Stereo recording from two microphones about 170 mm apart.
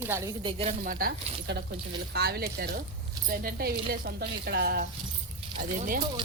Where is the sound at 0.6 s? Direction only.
55° right (ahead or behind).